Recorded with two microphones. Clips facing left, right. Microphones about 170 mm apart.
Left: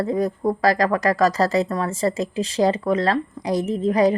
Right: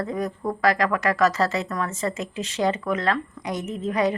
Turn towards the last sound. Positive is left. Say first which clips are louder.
# left 6 dB
turn(degrees=35)  # may be behind; listen again after turning